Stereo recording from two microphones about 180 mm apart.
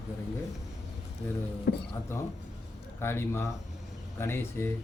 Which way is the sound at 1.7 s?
65° left (ahead or behind).